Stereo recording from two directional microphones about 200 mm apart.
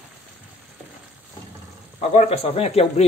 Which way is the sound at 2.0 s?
30° left (ahead or behind).